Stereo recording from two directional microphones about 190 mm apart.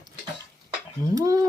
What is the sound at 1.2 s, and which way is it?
Speech, 20° right (ahead or behind).